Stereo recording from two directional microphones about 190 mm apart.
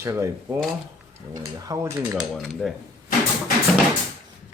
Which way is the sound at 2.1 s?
Centre (ahead or behind).